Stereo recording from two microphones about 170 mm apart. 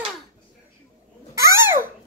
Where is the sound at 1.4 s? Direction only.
15° right (ahead or behind).